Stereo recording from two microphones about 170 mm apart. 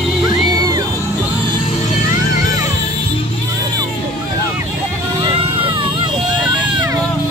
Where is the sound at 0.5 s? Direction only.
25° right (ahead or behind).